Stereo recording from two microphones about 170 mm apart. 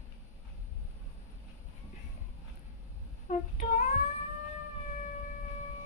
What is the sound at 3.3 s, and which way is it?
Child singing, 45° left (ahead or behind).